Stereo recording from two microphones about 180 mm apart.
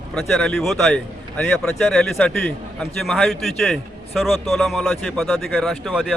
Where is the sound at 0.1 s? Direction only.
Centre (ahead or behind).